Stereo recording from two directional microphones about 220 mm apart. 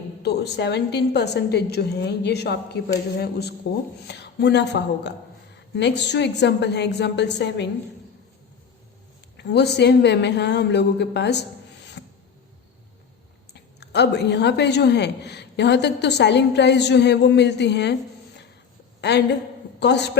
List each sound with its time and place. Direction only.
0.2 s a woman's voice: 50° left (ahead or behind)
9.4 s a woman's voice: 50° left (ahead or behind)
12.0 s a sound: 50° left (ahead or behind)
13.5 s a woman's voice: 50° left (ahead or behind)
19.0 s a woman's voice: 50° left (ahead or behind)